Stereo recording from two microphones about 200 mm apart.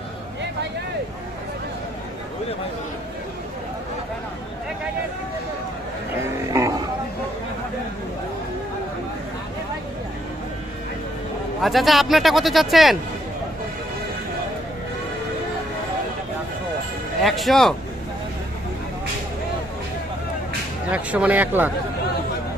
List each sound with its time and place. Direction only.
6.5 s roaring cats: 15° right (ahead or behind)
11.6 s speech: centre (ahead or behind)
17.2 s speech: centre (ahead or behind)
20.9 s speech: 5° right (ahead or behind)